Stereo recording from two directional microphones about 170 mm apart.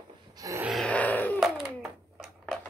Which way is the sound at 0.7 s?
5° left (ahead or behind).